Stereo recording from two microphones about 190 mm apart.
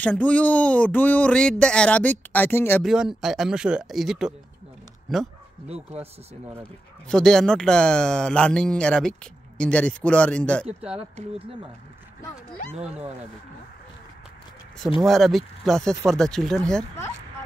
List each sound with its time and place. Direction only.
0.0 s speech: 10° left (ahead or behind)
2.8 s speech: centre (ahead or behind)
7.1 s speech: 5° left (ahead or behind)
11.0 s speech: 30° right (ahead or behind)
15.0 s speech: centre (ahead or behind)